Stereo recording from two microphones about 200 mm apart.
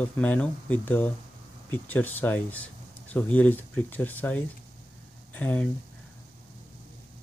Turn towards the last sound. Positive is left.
turn(degrees=5)  # may be behind; listen again after turning